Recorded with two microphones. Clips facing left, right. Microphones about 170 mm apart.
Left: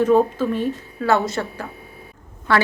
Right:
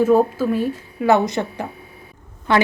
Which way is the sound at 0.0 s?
10° right (ahead or behind).